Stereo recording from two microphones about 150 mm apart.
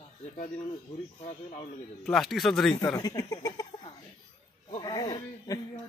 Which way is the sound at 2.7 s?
30° left (ahead or behind).